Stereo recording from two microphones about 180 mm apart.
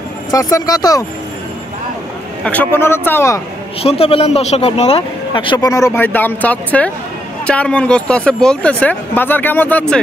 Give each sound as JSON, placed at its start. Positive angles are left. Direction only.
{"t": 0.3, "sound": "speech", "side_deg": 20}
{"t": 2.4, "sound": "speech", "side_deg": 10}
{"t": 3.8, "sound": "speech", "side_deg": 30}